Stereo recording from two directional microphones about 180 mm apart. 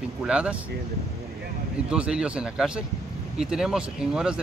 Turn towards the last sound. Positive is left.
turn(degrees=-5)  # may be behind; listen again after turning